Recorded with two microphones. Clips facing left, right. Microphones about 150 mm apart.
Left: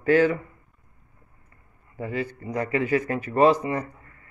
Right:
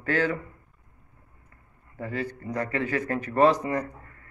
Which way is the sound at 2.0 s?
15° left (ahead or behind).